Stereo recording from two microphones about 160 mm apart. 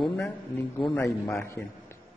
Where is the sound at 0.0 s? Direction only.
Centre (ahead or behind).